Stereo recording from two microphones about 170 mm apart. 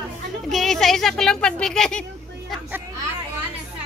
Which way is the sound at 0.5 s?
Centre (ahead or behind).